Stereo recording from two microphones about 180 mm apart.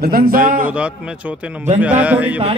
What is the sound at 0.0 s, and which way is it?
Speech, 55° right (ahead or behind).